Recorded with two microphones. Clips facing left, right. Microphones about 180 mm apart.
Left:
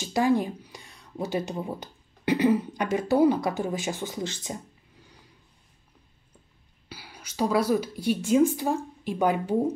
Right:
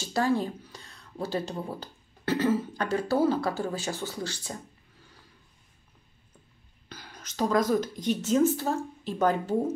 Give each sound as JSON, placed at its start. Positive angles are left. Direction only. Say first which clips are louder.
{"t": 0.0, "sound": "speech", "louder": "left 3 dB", "side_deg": 15}
{"t": 6.9, "sound": "a woman's voice", "louder": "left 1 dB", "side_deg": 10}